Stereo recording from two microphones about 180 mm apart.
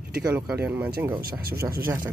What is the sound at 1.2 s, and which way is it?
Speech, 55° right (ahead or behind).